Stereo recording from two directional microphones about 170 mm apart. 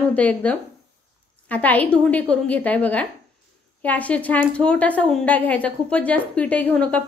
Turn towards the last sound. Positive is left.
turn(degrees=5)  # may be behind; listen again after turning